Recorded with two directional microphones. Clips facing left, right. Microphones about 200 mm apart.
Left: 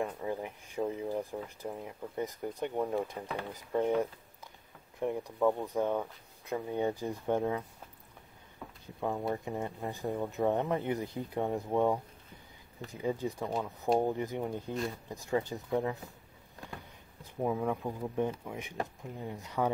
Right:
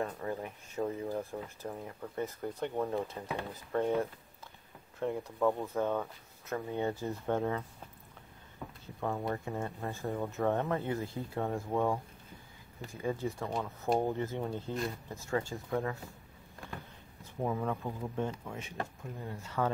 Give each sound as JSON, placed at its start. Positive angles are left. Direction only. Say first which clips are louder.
{"t": 0.0, "sound": "speech", "louder": "left 1 dB", "side_deg": 10}
{"t": 5.0, "sound": "speech", "louder": "left 1 dB", "side_deg": 15}
{"t": 8.8, "sound": "a sound", "louder": "left 1 dB", "side_deg": 15}
{"t": 9.3, "sound": "speech", "louder": "left 1 dB", "side_deg": 15}
{"t": 17.4, "sound": "speech", "louder": "left 2 dB", "side_deg": 10}